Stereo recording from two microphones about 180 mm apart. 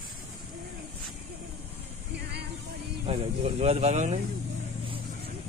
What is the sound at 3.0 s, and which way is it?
Speech, 30° right (ahead or behind).